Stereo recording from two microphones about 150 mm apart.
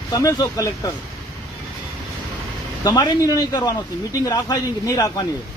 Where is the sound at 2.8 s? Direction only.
25° left (ahead or behind).